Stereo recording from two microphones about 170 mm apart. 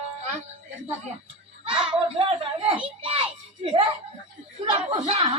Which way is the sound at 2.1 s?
35° right (ahead or behind).